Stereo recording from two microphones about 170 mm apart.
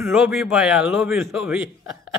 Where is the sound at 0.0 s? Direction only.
5° right (ahead or behind).